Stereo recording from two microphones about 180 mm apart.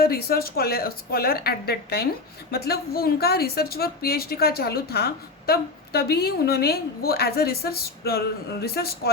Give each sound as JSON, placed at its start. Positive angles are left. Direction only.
{"t": 0.0, "sound": "a woman's voice", "side_deg": 55}